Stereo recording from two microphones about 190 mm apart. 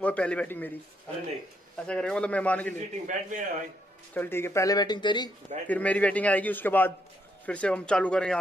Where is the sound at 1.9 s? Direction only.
5° left (ahead or behind).